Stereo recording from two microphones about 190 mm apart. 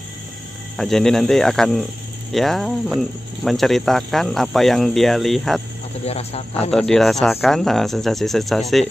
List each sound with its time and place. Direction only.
0.7 s speech: centre (ahead or behind)
6.0 s speech: 35° left (ahead or behind)
6.7 s speech: 5° left (ahead or behind)